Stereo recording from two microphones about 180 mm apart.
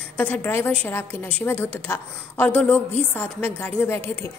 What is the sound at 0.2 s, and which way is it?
A woman's voice, 10° left (ahead or behind).